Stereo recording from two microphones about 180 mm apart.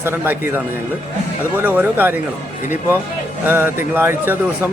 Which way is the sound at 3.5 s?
10° right (ahead or behind).